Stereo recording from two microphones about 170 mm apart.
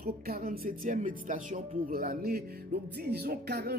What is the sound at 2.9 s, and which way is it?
Music, 70° right (ahead or behind).